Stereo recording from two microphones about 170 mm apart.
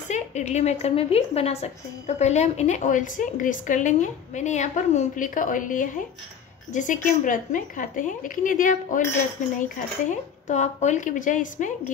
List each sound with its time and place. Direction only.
0.1 s a woman's voice: 45° left (ahead or behind)